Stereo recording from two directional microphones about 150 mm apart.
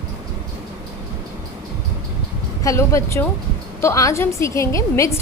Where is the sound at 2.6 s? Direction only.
20° left (ahead or behind).